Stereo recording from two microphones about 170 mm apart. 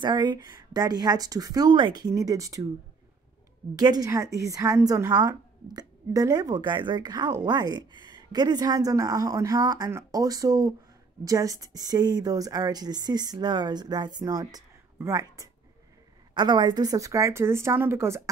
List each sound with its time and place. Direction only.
0.0 s a woman's voice: 25° right (ahead or behind)
3.7 s a woman's voice: 25° right (ahead or behind)